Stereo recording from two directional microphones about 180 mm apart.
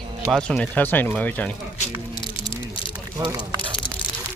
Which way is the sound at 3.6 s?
25° left (ahead or behind).